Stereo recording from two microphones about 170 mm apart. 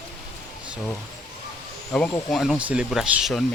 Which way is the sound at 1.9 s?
Centre (ahead or behind).